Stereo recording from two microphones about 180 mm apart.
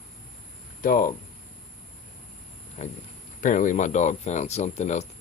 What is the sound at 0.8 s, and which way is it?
Speech, 50° left (ahead or behind).